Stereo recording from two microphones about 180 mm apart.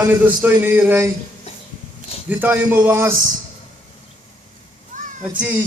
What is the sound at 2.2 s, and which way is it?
Speech, 10° right (ahead or behind).